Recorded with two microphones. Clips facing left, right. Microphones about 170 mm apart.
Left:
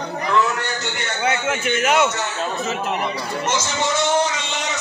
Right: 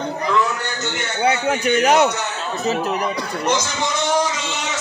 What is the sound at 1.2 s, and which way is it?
Speech, 35° right (ahead or behind).